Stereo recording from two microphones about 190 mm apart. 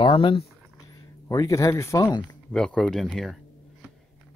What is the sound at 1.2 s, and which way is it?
Speech, 15° left (ahead or behind).